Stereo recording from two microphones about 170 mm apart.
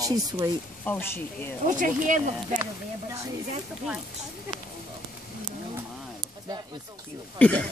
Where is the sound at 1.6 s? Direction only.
50° right (ahead or behind).